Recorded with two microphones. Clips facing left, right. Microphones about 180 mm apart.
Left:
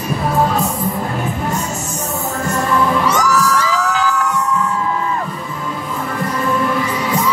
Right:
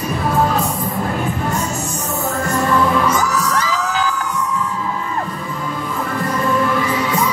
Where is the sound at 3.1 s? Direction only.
75° left (ahead or behind).